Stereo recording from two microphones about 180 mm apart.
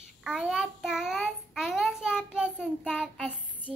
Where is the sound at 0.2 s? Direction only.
5° right (ahead or behind).